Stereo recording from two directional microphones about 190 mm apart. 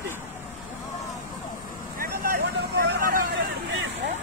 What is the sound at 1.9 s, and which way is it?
Vehicle, 50° right (ahead or behind).